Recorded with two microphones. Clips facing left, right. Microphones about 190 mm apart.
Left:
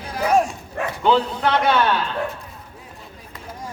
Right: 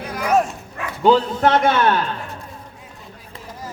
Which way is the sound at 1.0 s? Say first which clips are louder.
Right 4 dB; 45° right (ahead or behind).